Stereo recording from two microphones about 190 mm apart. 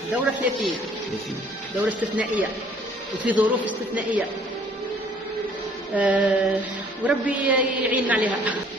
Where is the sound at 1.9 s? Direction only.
10° right (ahead or behind).